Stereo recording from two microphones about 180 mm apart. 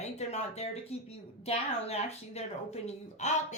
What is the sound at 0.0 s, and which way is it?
Speech, 40° left (ahead or behind).